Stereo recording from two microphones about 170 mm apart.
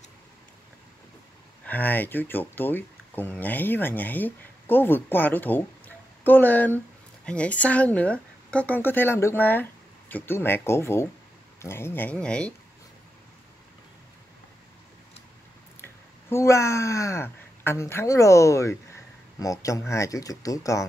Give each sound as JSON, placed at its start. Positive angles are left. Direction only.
{"t": 1.7, "sound": "speech", "side_deg": 10}
{"t": 15.8, "sound": "speech", "side_deg": 15}